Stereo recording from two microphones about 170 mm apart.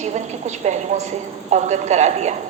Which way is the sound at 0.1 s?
45° right (ahead or behind).